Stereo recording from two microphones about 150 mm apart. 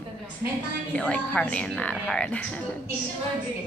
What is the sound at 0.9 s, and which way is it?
A woman's voice, 10° left (ahead or behind).